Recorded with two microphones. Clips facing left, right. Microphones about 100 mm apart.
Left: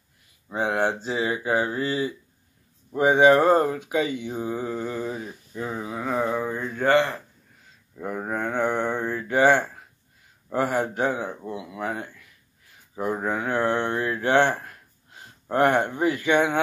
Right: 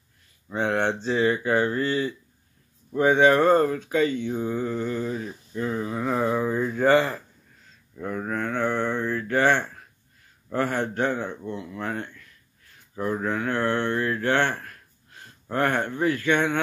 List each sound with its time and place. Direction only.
0.5 s speech: 10° left (ahead or behind)
8.0 s speech: 15° left (ahead or behind)